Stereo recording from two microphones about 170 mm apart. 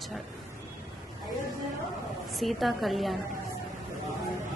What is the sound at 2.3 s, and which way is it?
Speech, centre (ahead or behind).